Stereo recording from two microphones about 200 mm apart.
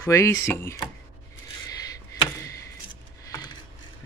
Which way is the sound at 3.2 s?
20° left (ahead or behind).